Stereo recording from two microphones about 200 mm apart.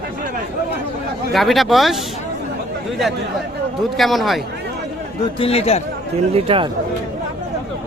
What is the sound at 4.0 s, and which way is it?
Speech, centre (ahead or behind).